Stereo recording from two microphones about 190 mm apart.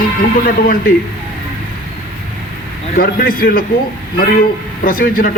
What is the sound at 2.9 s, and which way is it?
Speech, 50° left (ahead or behind).